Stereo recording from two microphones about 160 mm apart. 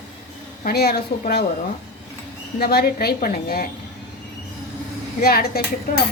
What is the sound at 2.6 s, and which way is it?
A woman's voice, 80° left.